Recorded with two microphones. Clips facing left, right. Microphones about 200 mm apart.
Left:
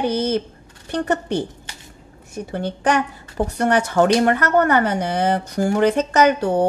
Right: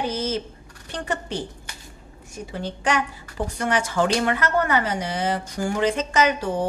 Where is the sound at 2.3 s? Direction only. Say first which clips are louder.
Left 5 dB; 60° left (ahead or behind).